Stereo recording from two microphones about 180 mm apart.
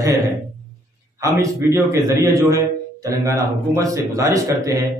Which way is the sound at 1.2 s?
15° right (ahead or behind).